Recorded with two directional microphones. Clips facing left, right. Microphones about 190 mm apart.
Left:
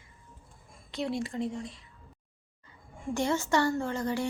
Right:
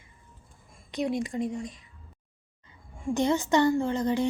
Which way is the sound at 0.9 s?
15° right (ahead or behind).